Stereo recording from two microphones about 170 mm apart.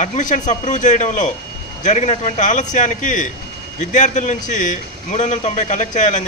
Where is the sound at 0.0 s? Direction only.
45° left (ahead or behind).